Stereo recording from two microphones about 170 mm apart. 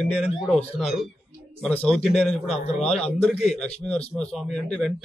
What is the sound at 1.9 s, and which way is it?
Speech, 40° left (ahead or behind).